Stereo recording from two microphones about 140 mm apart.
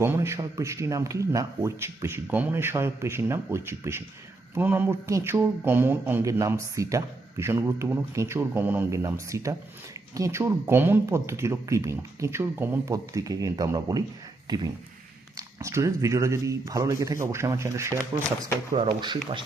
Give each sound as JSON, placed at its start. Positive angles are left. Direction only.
{"t": 0.0, "sound": "speech", "side_deg": -20}
{"t": 18.8, "sound": "speech", "side_deg": -35}